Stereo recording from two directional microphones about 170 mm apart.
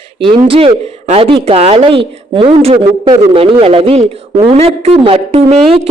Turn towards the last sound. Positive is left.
turn(degrees=-35)  # may be behind; listen again after turning